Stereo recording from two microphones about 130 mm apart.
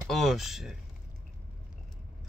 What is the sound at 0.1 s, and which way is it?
Speech, centre (ahead or behind).